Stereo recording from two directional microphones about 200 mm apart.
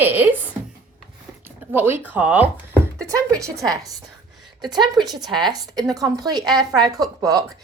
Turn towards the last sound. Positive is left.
turn(degrees=-20)  # may be behind; listen again after turning